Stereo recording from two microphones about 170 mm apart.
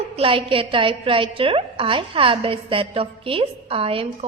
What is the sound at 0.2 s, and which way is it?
A woman's voice, 30° right (ahead or behind).